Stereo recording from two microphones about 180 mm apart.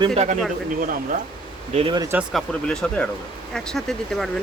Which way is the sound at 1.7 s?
30° right (ahead or behind).